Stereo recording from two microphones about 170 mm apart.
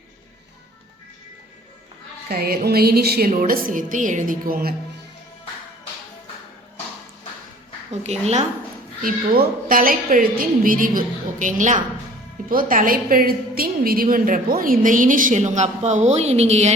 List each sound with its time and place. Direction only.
2.3 s a woman's voice: 65° right (ahead or behind)
8.0 s a woman's voice: 40° right (ahead or behind)
9.0 s a woman's voice: 55° right (ahead or behind)